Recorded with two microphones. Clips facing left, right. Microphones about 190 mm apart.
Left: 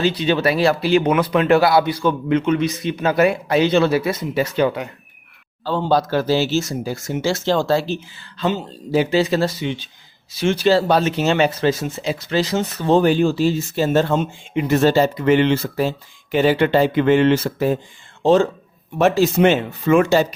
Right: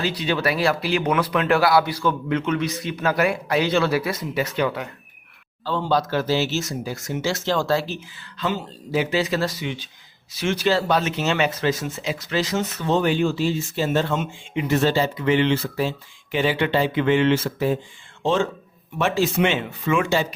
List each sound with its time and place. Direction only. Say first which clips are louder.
0.0 s speech: left 5 dB; 25° left (ahead or behind)
5.9 s speech: left 4 dB; 35° left (ahead or behind)